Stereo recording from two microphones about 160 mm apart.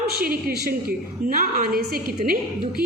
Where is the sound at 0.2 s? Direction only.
70° right (ahead or behind).